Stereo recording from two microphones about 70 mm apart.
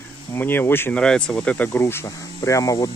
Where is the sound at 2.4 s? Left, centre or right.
Left.